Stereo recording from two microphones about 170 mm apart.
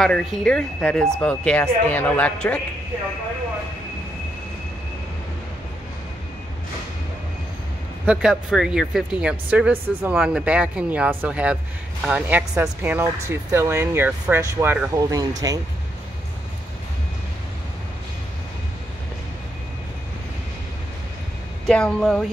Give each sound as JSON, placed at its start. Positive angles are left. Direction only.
{"t": 0.0, "sound": "speech", "side_deg": 0}
{"t": 8.0, "sound": "speech", "side_deg": -5}
{"t": 21.6, "sound": "speech", "side_deg": 5}